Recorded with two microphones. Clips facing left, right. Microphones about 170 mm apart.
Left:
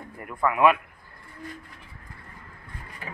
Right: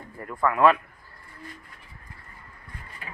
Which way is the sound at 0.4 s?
10° left (ahead or behind).